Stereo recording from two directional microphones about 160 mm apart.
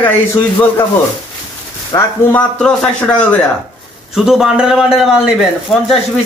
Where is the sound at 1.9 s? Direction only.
15° left (ahead or behind).